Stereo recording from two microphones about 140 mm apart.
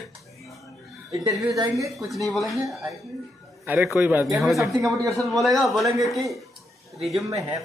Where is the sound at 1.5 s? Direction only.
25° right (ahead or behind).